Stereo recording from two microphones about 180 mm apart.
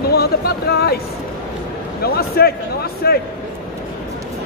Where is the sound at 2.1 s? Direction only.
60° left (ahead or behind).